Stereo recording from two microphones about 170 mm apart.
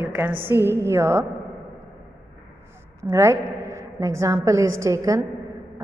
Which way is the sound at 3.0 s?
15° right (ahead or behind).